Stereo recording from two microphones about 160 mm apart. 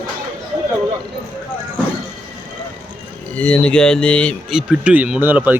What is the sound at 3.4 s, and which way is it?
Speech, 5° left (ahead or behind).